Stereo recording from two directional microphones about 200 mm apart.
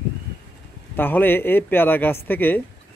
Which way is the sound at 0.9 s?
10° left (ahead or behind).